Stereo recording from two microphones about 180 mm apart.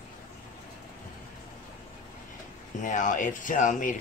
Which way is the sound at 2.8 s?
45° left (ahead or behind).